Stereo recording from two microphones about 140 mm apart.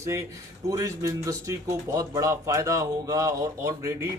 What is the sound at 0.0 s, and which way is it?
Speech, 20° right (ahead or behind).